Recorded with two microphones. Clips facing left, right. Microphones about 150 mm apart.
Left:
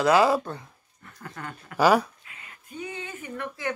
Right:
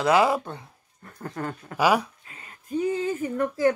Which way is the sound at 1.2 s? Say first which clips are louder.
Right 7 dB; 35° right (ahead or behind).